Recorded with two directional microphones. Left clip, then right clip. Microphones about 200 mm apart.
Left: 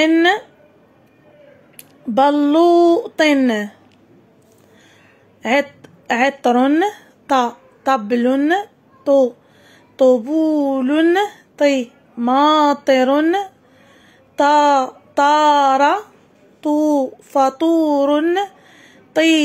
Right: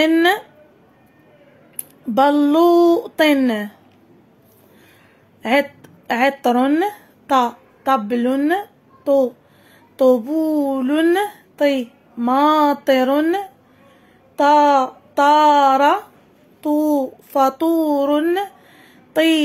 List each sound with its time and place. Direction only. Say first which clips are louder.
0.0 s a woman's voice: left 1 dB; 10° left (ahead or behind)
1.8 s a woman's voice: left 1 dB; 10° left (ahead or behind)
5.4 s a woman's voice: even; 10° left (ahead or behind)